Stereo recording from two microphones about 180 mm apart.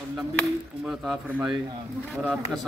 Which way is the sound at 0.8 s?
Centre (ahead or behind).